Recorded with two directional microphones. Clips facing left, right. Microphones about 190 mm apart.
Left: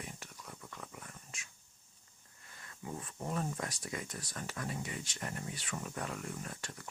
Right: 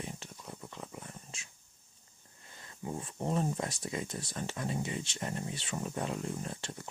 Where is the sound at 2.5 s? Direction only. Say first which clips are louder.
Right 4 dB; 25° right (ahead or behind).